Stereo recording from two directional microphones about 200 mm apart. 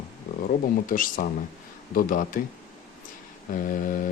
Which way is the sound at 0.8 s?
45° left (ahead or behind).